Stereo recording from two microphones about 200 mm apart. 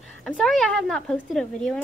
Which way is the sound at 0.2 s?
5° left (ahead or behind).